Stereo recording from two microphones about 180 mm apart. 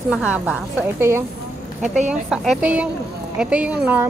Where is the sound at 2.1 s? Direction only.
5° right (ahead or behind).